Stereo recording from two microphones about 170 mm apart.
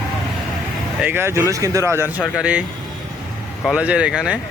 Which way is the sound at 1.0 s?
15° right (ahead or behind).